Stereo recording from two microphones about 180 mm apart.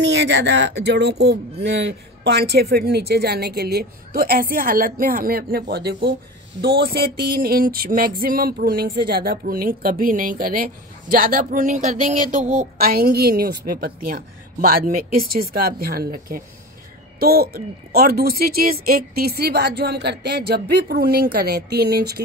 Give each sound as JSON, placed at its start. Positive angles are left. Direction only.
{"t": 0.0, "sound": "speech", "side_deg": -75}